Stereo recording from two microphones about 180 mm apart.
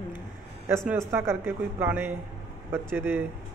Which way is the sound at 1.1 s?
10° right (ahead or behind).